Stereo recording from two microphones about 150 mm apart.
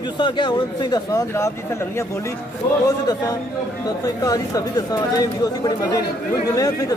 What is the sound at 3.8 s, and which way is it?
Speech, 25° left (ahead or behind).